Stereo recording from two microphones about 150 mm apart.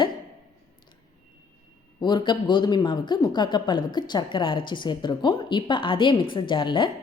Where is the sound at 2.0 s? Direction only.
30° left (ahead or behind).